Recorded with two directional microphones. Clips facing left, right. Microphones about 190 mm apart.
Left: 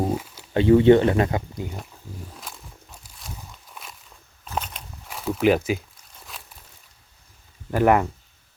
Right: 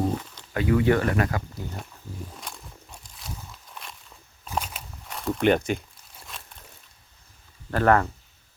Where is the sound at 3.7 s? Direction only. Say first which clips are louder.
Even; 5° left (ahead or behind).